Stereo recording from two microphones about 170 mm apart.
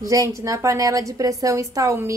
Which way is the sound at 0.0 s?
20° right (ahead or behind).